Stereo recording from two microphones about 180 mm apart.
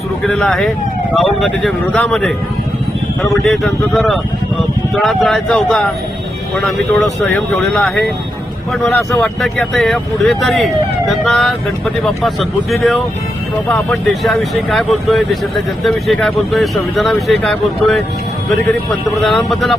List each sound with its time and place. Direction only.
0.2 s speech: centre (ahead or behind)
3.4 s speech: centre (ahead or behind)